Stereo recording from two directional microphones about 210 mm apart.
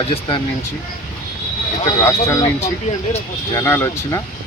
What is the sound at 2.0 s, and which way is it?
Speech, 15° left (ahead or behind).